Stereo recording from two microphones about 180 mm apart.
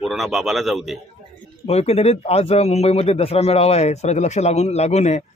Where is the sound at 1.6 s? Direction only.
35° left (ahead or behind).